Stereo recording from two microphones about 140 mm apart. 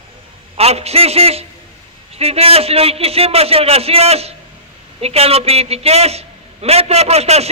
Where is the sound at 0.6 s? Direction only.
50° right (ahead or behind).